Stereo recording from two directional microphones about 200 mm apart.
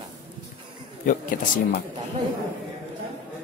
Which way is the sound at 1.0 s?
45° left (ahead or behind).